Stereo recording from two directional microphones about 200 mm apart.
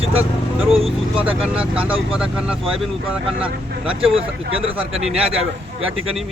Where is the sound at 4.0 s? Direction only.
30° right (ahead or behind).